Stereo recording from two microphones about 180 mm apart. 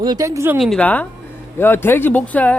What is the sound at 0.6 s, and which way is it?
Speech, 5° left (ahead or behind).